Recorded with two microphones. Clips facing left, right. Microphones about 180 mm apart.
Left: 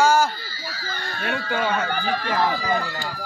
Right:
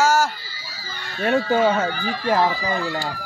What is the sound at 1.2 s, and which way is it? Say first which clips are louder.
Speech: right 8 dB; 35° right (ahead or behind).